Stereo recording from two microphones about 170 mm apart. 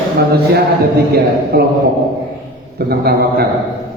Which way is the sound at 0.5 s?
70° right (ahead or behind).